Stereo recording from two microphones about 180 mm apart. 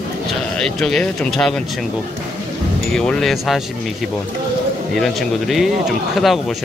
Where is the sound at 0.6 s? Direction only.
Centre (ahead or behind).